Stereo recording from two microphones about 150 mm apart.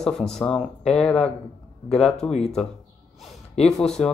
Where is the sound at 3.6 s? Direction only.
5° left (ahead or behind).